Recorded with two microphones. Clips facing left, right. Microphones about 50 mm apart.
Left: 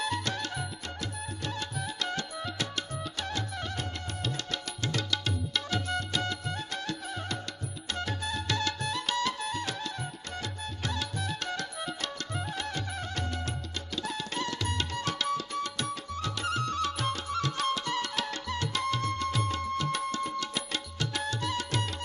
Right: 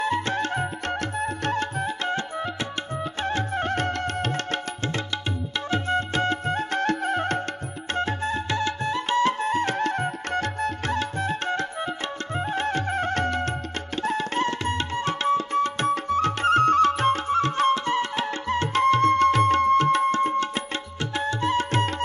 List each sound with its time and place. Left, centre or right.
0.0 s music: right
5.7 s music: right
7.9 s music: right
13.9 s tabla: right
21.0 s music: right